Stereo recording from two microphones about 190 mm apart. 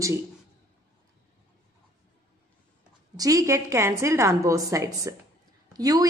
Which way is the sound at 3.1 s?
20° right (ahead or behind).